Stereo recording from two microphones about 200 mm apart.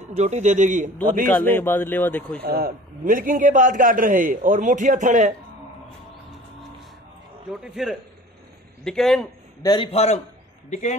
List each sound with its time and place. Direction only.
0.0 s a man's voice: 35° right (ahead or behind)
1.2 s a man's voice: 10° left (ahead or behind)
2.4 s a man's voice: 50° right (ahead or behind)
7.6 s speech: centre (ahead or behind)
9.6 s a man's voice: 20° left (ahead or behind)